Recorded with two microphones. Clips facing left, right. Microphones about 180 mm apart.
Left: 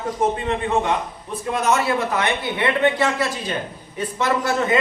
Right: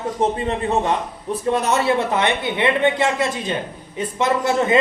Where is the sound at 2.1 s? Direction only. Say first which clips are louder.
Right 2 dB; 20° right (ahead or behind).